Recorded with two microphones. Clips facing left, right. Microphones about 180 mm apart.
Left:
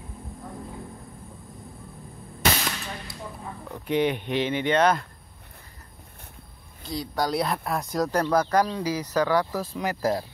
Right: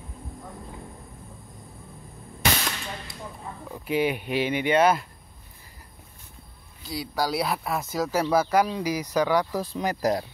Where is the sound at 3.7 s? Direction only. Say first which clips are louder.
Left 1 dB; 5° right (ahead or behind).